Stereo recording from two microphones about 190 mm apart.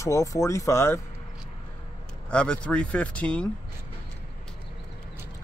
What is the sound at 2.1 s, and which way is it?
Speech, 5° left (ahead or behind).